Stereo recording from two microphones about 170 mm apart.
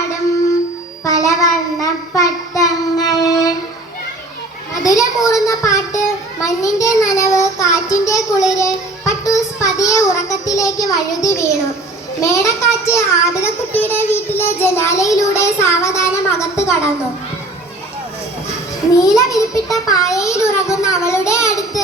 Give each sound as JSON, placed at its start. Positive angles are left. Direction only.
{"t": 1.0, "sound": "child singing", "side_deg": 20}
{"t": 4.7, "sound": "child singing", "side_deg": 20}
{"t": 6.4, "sound": "a child's voice", "side_deg": 20}
{"t": 7.0, "sound": "child singing", "side_deg": 20}
{"t": 12.2, "sound": "a child's voice", "side_deg": 20}
{"t": 18.9, "sound": "a child's voice", "side_deg": 20}
{"t": 19.9, "sound": "a sound", "side_deg": 20}